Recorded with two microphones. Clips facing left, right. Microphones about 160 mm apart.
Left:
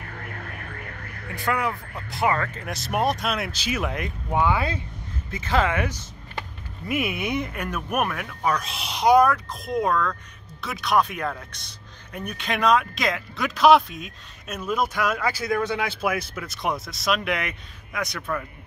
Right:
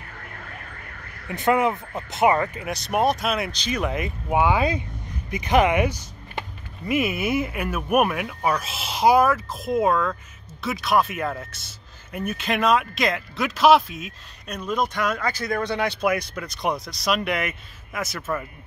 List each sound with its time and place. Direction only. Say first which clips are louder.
1.3 s speech: right 6 dB; 20° right (ahead or behind)
2.6 s speech: right 3 dB; centre (ahead or behind)
4.3 s speech: right 3 dB; 15° right (ahead or behind)
6.9 s speech: right 3 dB; centre (ahead or behind)